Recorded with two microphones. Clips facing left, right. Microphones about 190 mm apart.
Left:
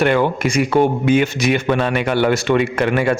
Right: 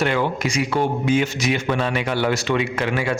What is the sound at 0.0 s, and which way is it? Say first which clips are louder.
A man's voice: left 5 dB; 55° left (ahead or behind).